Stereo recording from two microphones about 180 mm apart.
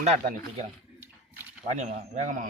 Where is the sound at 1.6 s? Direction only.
40° right (ahead or behind).